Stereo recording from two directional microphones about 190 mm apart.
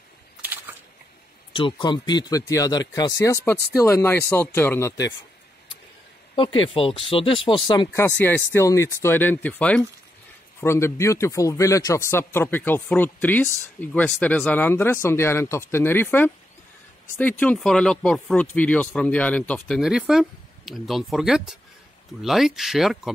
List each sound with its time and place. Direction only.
1.5 s speech: 25° left (ahead or behind)
6.3 s speech: 25° left (ahead or behind)
8.2 s speech: 10° left (ahead or behind)
19.8 s speech: 5° right (ahead or behind)